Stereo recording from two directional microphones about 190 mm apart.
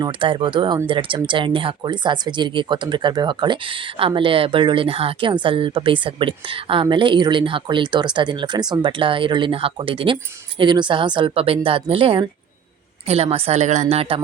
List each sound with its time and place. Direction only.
0.0 s a woman's voice: 25° right (ahead or behind)